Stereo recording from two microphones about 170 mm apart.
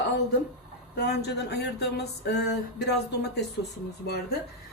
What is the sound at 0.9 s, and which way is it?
Speech, 75° left (ahead or behind).